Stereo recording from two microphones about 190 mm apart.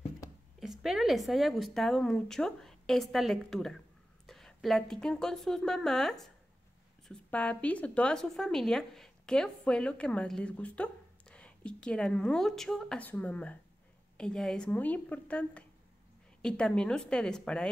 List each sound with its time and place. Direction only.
0.6 s a woman's voice: centre (ahead or behind)